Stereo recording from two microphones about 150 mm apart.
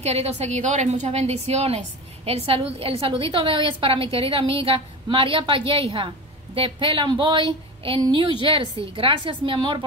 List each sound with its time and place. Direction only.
0.0 s a woman's voice: 45° right (ahead or behind)